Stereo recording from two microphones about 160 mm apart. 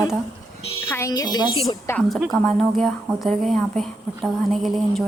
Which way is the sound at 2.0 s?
Centre (ahead or behind).